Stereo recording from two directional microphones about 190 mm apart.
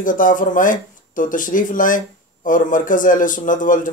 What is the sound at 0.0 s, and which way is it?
Speech, 45° left (ahead or behind).